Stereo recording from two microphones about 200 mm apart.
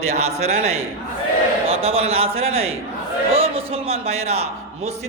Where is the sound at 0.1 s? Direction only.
35° right (ahead or behind).